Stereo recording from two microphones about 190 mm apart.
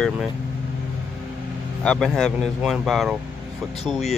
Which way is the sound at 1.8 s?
5° left (ahead or behind).